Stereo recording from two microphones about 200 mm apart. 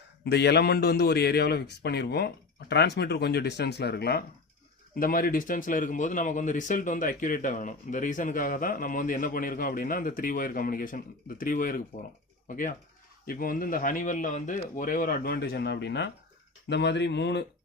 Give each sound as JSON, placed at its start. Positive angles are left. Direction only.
{"t": 0.3, "sound": "a man's voice", "side_deg": 55}